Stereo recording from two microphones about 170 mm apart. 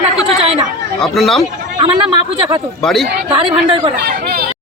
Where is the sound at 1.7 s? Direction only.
30° right (ahead or behind).